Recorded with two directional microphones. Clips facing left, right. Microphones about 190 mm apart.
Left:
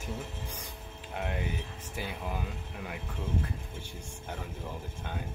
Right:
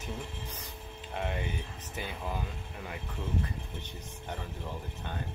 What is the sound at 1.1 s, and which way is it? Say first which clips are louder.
Speech: even; 5° left (ahead or behind).